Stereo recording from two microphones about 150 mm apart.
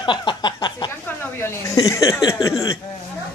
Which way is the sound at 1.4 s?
20° left (ahead or behind).